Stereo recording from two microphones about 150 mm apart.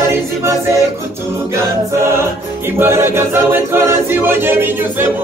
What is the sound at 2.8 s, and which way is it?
A capella, 15° right (ahead or behind).